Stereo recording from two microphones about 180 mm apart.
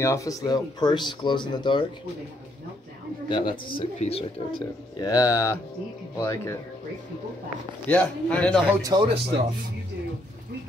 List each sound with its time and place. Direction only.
0.0 s speech: 15° left (ahead or behind)
3.3 s a man's voice: 25° left (ahead or behind)
7.9 s a man's voice: 5° left (ahead or behind)
8.8 s speech: 25° right (ahead or behind)